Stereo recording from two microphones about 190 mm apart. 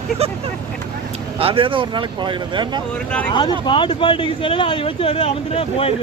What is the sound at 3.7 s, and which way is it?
Speech, 25° left (ahead or behind).